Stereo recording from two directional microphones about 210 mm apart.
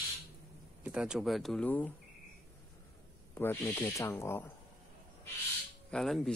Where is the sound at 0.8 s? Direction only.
5° right (ahead or behind).